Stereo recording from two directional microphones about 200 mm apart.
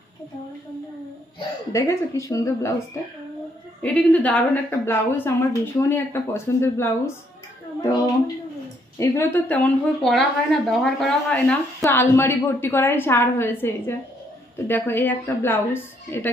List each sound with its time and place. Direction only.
1.7 s speech: 15° left (ahead or behind)
3.8 s speech: 5° left (ahead or behind)